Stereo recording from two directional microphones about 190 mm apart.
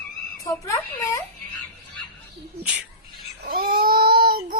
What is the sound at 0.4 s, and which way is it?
Speech, 15° left (ahead or behind).